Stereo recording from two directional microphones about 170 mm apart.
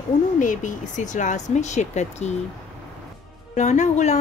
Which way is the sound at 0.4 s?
50° left (ahead or behind).